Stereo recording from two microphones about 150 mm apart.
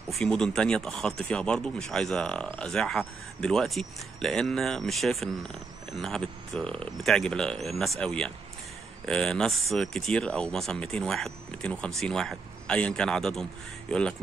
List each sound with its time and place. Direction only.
0.1 s speech: 5° left (ahead or behind)